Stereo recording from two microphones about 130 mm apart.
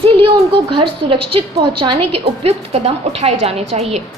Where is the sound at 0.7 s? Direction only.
40° right (ahead or behind).